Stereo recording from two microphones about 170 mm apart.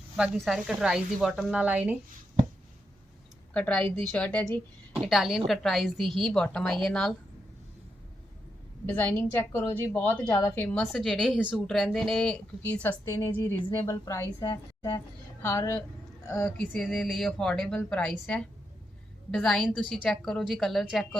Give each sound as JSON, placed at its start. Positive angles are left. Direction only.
{"t": 0.2, "sound": "speech", "side_deg": 0}
{"t": 3.5, "sound": "a woman's voice", "side_deg": 5}
{"t": 8.9, "sound": "a woman's voice", "side_deg": 10}
{"t": 16.3, "sound": "speech", "side_deg": 5}